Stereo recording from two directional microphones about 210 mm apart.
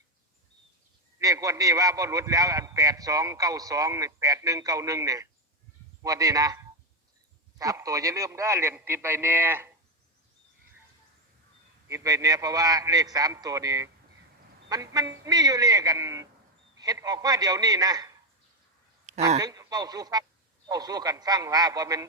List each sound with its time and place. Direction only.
1.2 s a man's voice: 15° right (ahead or behind)
11.9 s a man's voice: 15° right (ahead or behind)
19.4 s a man's voice: 20° right (ahead or behind)